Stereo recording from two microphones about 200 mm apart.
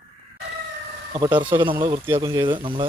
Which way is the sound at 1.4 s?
25° right (ahead or behind).